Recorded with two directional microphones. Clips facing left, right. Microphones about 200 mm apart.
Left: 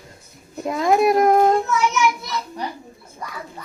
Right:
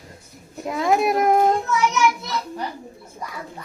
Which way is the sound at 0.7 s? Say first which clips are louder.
Left 3 dB; centre (ahead or behind).